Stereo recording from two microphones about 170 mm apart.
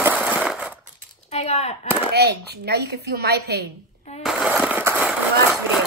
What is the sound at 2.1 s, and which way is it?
Speech, 75° right (ahead or behind).